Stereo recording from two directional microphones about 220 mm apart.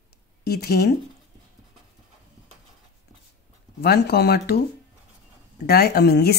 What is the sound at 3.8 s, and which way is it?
Speech, 45° left (ahead or behind).